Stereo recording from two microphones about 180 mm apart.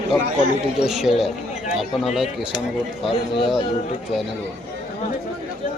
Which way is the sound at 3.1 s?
30° left (ahead or behind).